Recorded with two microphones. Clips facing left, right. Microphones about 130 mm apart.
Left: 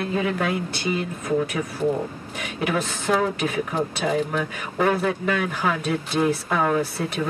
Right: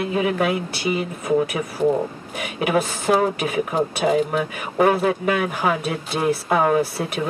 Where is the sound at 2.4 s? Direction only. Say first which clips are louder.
Right 4 dB; 10° right (ahead or behind).